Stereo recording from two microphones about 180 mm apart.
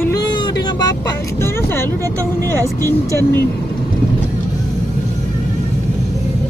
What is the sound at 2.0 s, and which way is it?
Speech, 15° right (ahead or behind).